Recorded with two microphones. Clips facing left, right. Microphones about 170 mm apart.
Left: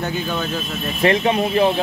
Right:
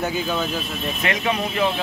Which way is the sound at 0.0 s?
5° right (ahead or behind).